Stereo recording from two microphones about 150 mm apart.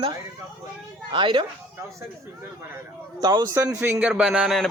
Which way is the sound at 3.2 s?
25° right (ahead or behind).